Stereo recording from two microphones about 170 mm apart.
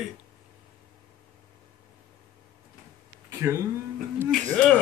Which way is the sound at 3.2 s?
15° right (ahead or behind).